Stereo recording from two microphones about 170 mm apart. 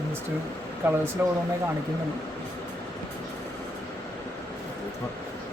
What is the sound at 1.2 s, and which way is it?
Speech, 15° right (ahead or behind).